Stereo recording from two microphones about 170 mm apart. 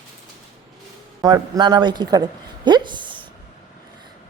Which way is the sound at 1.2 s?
25° right (ahead or behind).